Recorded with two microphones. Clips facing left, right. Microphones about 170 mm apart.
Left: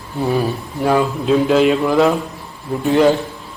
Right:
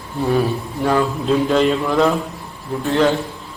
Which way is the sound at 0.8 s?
10° left (ahead or behind).